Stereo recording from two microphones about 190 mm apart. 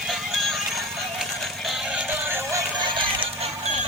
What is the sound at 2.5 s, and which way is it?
Music, 25° right (ahead or behind).